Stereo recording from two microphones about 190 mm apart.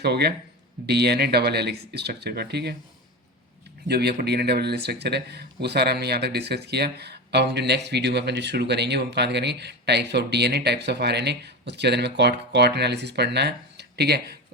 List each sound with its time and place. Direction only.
0.0 s speech: 60° right (ahead or behind)
3.8 s speech: 60° right (ahead or behind)